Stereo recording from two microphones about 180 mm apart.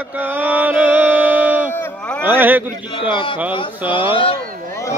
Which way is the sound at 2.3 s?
10° right (ahead or behind).